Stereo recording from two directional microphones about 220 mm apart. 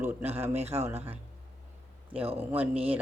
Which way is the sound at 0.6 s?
30° right (ahead or behind).